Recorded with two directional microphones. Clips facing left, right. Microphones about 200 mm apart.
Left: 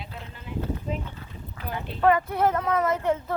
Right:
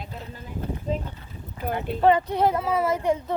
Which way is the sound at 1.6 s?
50° right (ahead or behind).